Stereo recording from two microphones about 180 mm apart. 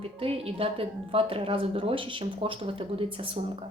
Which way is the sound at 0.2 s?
30° right (ahead or behind).